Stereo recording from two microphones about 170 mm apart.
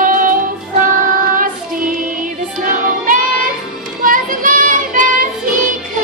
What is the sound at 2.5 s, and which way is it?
Music, 55° right (ahead or behind).